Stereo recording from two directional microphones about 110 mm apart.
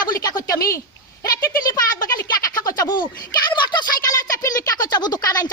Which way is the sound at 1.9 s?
30° left (ahead or behind).